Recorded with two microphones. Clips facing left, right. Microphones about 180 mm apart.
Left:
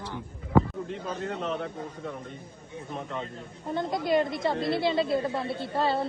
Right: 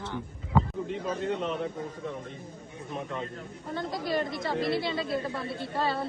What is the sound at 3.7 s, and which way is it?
Speech, 20° left (ahead or behind).